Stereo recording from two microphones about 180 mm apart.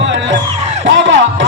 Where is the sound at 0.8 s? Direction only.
80° right.